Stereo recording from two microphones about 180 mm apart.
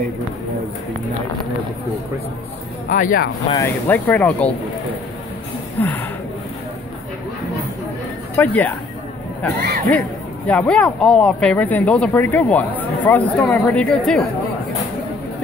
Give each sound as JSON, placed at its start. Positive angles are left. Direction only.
{"t": 2.9, "sound": "speech", "side_deg": 50}
{"t": 3.5, "sound": "speech", "side_deg": 10}
{"t": 5.8, "sound": "speech", "side_deg": 10}
{"t": 8.4, "sound": "speech", "side_deg": 10}
{"t": 9.8, "sound": "a woman's voice", "side_deg": 10}